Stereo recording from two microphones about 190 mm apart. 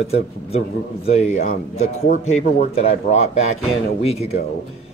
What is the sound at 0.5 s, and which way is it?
Speech, 35° left (ahead or behind).